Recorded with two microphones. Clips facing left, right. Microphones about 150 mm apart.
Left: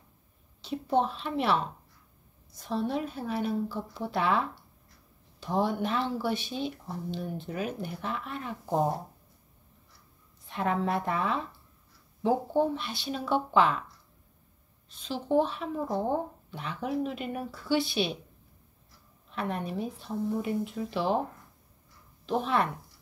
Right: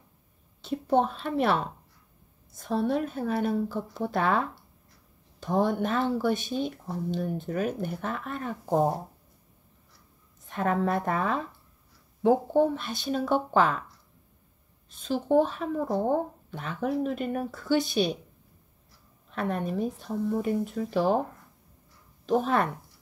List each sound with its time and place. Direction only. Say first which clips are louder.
0.6 s speech: right 3 dB; 50° right (ahead or behind)
10.4 s speech: right 3 dB; 45° right (ahead or behind)
14.9 s speech: right 4 dB; 50° right (ahead or behind)
19.3 s speech: right 3 dB; 45° right (ahead or behind)
22.2 s speech: right 3 dB; 45° right (ahead or behind)